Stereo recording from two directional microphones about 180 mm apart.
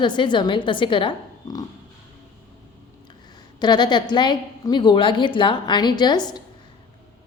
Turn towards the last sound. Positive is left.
turn(degrees=25)  # may be behind; listen again after turning